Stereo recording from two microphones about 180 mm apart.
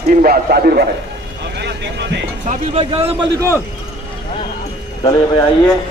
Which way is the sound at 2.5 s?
35° right (ahead or behind).